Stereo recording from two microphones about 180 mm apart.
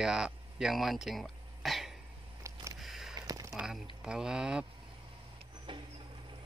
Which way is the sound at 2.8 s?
Centre (ahead or behind).